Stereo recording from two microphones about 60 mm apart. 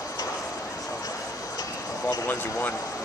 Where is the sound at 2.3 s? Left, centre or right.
Left.